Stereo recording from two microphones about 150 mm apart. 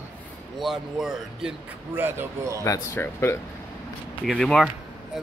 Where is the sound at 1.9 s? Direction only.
15° right (ahead or behind).